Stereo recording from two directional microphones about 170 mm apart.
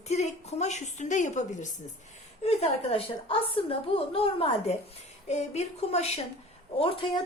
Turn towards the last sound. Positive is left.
turn(degrees=30)  # may be behind; listen again after turning